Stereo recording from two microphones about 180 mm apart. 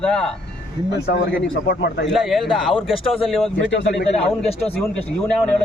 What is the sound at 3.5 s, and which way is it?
Speech, 85° left.